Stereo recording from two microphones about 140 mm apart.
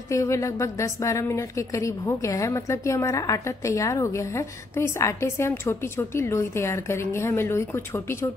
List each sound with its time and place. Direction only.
0.1 s a woman's voice: 20° left (ahead or behind)